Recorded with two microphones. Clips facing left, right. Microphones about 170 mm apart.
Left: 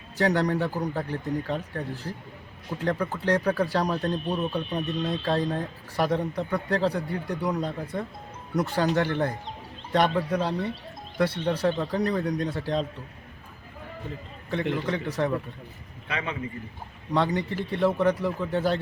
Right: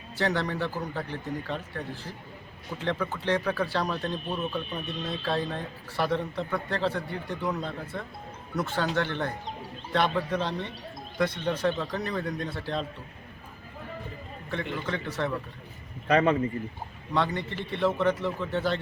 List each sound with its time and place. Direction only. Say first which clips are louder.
0.2 s speech: left 4 dB; 15° left (ahead or behind)
2.8 s speech: left 3 dB; 10° left (ahead or behind)
14.5 s speech: left 5 dB; 15° left (ahead or behind)
16.0 s a man's voice: right 10 dB; 40° right (ahead or behind)
17.2 s speech: left 3 dB; 10° left (ahead or behind)